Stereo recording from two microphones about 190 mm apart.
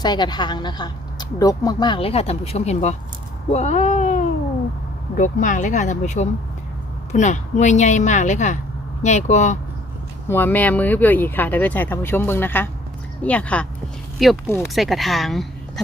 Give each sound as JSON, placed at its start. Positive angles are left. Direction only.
{"t": 0.0, "sound": "a woman's voice", "side_deg": 20}
{"t": 10.2, "sound": "speech", "side_deg": 10}